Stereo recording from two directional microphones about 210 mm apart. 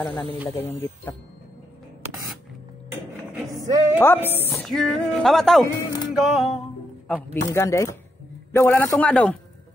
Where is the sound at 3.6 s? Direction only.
15° right (ahead or behind).